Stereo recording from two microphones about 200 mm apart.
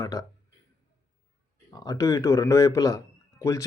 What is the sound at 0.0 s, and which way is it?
Speech, 20° left (ahead or behind).